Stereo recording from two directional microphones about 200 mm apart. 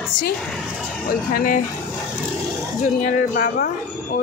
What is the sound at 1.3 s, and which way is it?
Speech, 40° left (ahead or behind).